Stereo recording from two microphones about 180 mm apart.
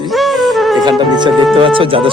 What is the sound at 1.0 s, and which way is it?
Speech, 25° right (ahead or behind).